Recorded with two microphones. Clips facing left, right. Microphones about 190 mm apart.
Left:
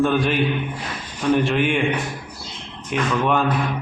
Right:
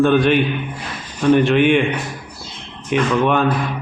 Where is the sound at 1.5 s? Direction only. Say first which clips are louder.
Right 7 dB; 65° right (ahead or behind).